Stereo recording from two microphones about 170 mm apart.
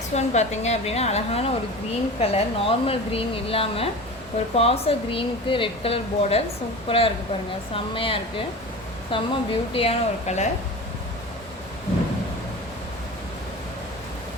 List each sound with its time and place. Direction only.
0.1 s speech: 40° left (ahead or behind)